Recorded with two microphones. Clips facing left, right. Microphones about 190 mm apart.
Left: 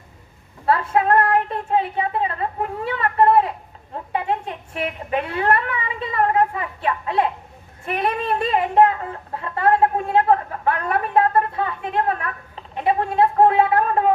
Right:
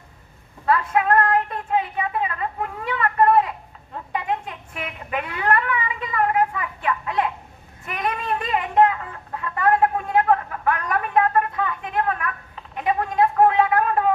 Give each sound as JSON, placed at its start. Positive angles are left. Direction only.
{"t": 0.6, "sound": "speech", "side_deg": 30}